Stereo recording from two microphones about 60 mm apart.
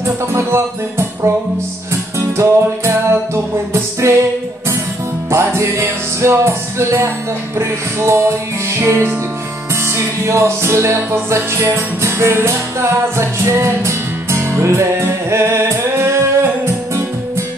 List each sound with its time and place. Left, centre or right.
0.0 s music: right
5.3 s music: right